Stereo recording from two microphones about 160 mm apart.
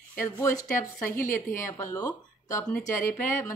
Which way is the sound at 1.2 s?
55° left (ahead or behind).